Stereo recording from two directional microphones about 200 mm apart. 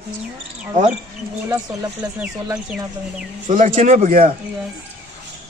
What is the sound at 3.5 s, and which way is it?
Speech, 40° right (ahead or behind).